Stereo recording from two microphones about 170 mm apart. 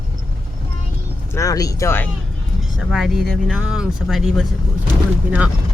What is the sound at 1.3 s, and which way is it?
Speech, 20° left (ahead or behind).